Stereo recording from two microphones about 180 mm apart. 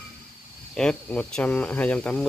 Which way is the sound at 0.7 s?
5° left (ahead or behind).